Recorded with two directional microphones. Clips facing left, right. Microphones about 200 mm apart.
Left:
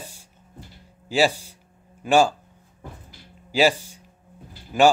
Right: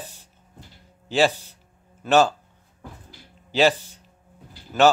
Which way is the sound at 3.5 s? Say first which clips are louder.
Even; 10° left (ahead or behind).